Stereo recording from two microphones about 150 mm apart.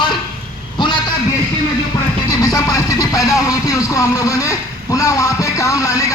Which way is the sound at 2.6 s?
25° left (ahead or behind).